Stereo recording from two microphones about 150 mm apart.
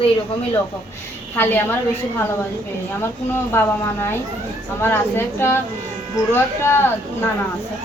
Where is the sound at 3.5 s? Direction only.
15° left (ahead or behind).